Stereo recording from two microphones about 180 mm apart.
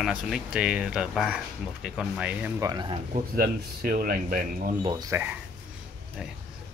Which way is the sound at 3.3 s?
55° right (ahead or behind).